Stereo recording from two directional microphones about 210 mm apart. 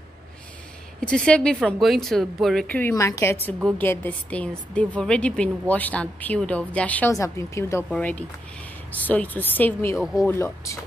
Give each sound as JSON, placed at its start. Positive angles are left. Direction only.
{"t": 1.0, "sound": "a woman's voice", "side_deg": 5}